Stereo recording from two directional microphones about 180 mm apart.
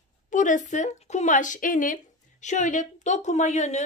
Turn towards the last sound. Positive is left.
turn(degrees=40)  # may be behind; listen again after turning